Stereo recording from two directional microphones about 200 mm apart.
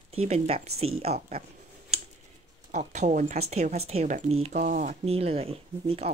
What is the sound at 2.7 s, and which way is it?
Speech, 35° right (ahead or behind).